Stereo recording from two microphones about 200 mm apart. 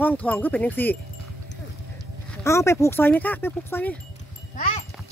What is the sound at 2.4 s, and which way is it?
Speech, 15° left (ahead or behind).